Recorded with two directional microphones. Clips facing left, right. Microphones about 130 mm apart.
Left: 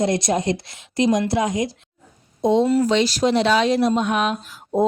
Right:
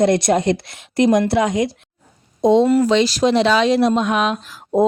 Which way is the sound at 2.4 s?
90° right.